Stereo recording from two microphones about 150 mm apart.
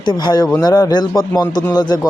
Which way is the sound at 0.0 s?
30° left (ahead or behind).